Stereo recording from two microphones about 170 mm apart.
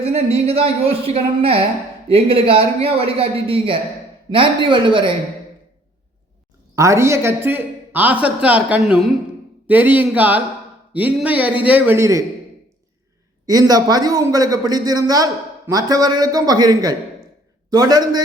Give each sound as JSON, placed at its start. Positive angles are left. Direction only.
{"t": 0.0, "sound": "speech", "side_deg": -35}
{"t": 6.7, "sound": "a woman's voice", "side_deg": -15}
{"t": 13.4, "sound": "a man's voice", "side_deg": -20}